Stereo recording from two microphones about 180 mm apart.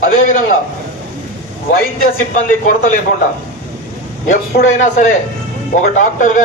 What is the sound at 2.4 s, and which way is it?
Speech, 45° left (ahead or behind).